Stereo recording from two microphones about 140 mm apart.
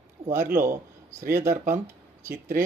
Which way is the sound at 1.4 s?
65° right (ahead or behind).